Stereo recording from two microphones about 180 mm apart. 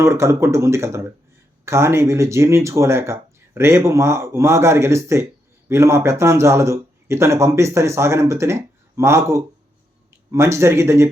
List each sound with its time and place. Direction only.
0.0 s speech: 15° right (ahead or behind)